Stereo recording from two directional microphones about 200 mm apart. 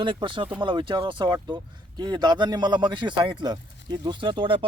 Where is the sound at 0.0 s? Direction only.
25° right (ahead or behind).